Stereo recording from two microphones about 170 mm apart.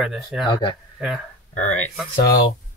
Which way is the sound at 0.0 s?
Centre (ahead or behind).